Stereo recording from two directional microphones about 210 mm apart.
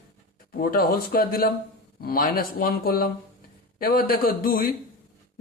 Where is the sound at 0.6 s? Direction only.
45° left (ahead or behind).